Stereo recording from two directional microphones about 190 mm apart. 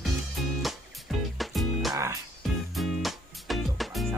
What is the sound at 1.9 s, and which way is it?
Music, 15° right (ahead or behind).